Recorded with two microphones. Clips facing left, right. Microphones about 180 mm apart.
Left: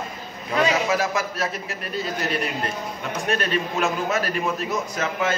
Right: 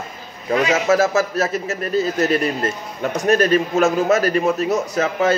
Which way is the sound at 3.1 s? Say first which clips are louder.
Right 9 dB; 40° right (ahead or behind).